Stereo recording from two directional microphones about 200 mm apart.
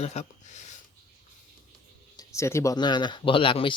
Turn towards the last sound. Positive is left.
turn(degrees=25)  # may be behind; listen again after turning